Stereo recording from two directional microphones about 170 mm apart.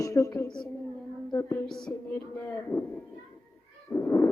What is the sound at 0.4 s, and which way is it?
Speech, 5° left (ahead or behind).